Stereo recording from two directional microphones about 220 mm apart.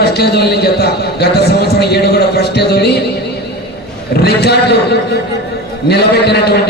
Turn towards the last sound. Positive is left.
turn(degrees=50)  # may be behind; listen again after turning